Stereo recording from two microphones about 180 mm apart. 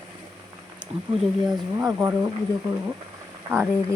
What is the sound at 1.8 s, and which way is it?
Speech, 15° right (ahead or behind).